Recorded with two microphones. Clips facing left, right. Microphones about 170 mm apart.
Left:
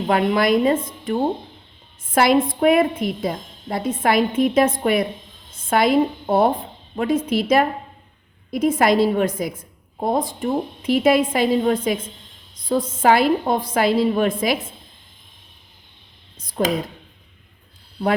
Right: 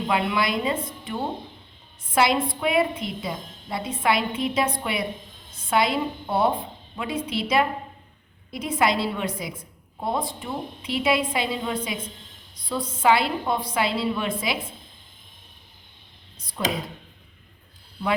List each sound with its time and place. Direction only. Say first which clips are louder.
0.1 s a woman's voice: left 8 dB; 45° left (ahead or behind)
16.4 s a woman's voice: left 7 dB; 45° left (ahead or behind)